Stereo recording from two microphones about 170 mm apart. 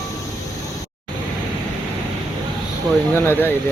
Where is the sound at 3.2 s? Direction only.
15° left (ahead or behind).